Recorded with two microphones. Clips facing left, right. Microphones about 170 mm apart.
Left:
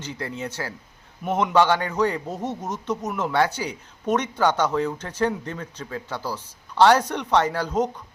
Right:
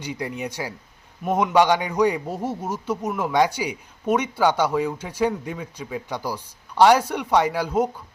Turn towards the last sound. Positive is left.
turn(degrees=-10)  # may be behind; listen again after turning